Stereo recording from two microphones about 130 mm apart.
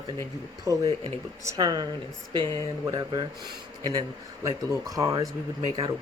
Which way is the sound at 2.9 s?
30° right (ahead or behind).